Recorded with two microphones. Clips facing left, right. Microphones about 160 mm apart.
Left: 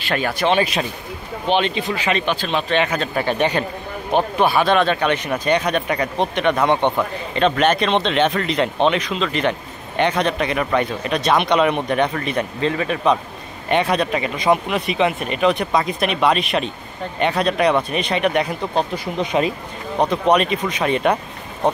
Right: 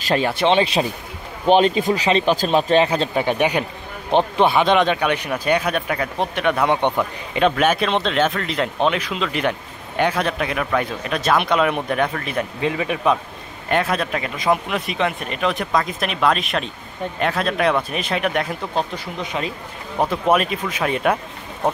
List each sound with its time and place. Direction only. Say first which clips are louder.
0.1 s speech: right 2 dB; 25° right (ahead or behind)
1.5 s a man's voice: right 5 dB; 45° right (ahead or behind)
3.2 s a man's voice: left 1 dB; 15° right (ahead or behind)
19.1 s speech: left 7 dB; 20° left (ahead or behind)
20.0 s a man's voice: left 2 dB; 5° right (ahead or behind)